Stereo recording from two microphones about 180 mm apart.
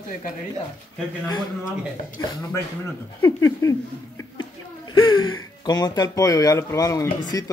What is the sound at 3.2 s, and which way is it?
Speech, 20° left (ahead or behind).